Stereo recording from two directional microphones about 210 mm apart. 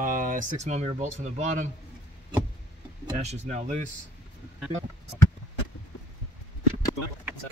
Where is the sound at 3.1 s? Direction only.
35° right (ahead or behind).